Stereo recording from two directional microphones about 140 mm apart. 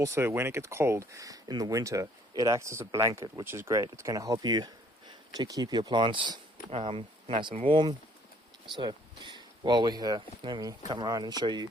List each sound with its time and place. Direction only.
0.0 s speech: 20° right (ahead or behind)